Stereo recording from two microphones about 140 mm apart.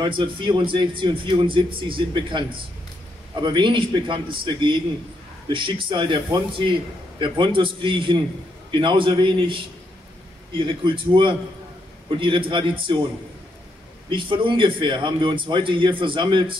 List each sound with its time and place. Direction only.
0.0 s a man's voice: 35° right (ahead or behind)
14.0 s a man's voice: 35° right (ahead or behind)